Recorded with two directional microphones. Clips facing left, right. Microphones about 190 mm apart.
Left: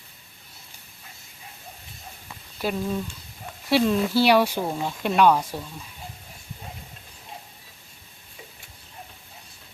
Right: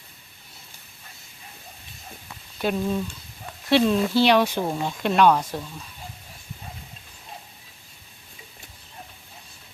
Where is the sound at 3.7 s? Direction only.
5° left (ahead or behind).